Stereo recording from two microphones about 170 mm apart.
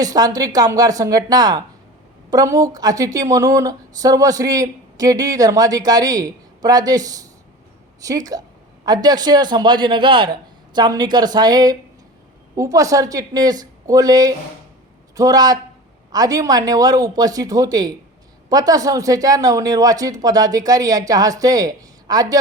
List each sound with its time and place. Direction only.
0.0 s a woman's voice: 20° right (ahead or behind)